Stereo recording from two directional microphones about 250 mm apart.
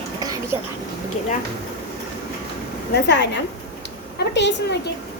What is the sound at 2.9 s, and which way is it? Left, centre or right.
A woman's voice, left.